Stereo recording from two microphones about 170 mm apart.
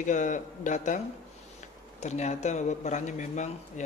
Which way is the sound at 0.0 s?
45° left (ahead or behind).